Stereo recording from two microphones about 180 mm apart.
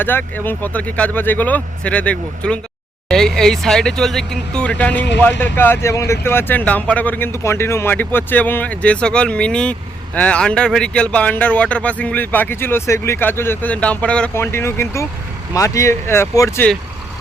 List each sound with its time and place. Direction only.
0.0 s speech: 10° left (ahead or behind)